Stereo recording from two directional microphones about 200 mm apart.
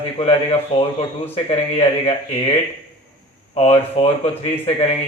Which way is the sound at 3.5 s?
30° left (ahead or behind).